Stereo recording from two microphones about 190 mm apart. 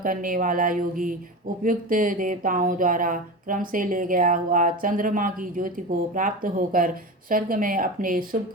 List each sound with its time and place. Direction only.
0.0 s speech: 45° right (ahead or behind)